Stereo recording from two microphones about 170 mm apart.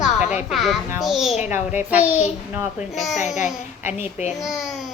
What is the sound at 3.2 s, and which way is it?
Speech, 45° left (ahead or behind).